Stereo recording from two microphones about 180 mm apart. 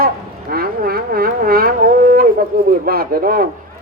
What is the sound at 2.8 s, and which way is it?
Speech, 55° right (ahead or behind).